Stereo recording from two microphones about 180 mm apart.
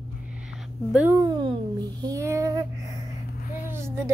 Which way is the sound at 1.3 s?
25° right (ahead or behind).